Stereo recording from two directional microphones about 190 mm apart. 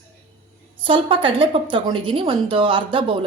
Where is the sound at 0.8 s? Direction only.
25° right (ahead or behind).